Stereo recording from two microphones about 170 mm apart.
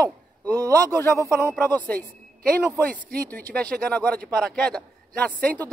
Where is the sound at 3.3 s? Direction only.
5° left (ahead or behind).